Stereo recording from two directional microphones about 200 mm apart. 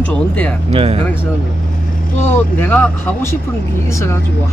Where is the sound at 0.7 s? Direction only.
30° right (ahead or behind).